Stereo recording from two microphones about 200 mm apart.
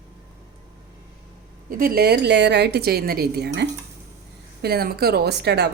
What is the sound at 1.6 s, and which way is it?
A woman's voice, 45° right (ahead or behind).